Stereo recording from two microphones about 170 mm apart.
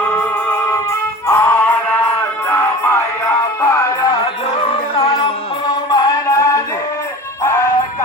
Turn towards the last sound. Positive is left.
turn(degrees=20)  # may be behind; listen again after turning